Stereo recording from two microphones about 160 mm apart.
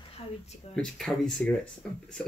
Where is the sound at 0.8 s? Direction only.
5° left (ahead or behind).